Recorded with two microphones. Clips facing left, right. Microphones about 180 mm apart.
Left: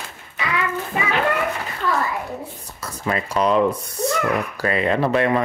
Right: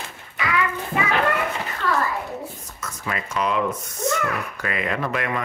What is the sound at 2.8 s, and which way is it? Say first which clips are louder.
Speech: left 5 dB; 35° left (ahead or behind).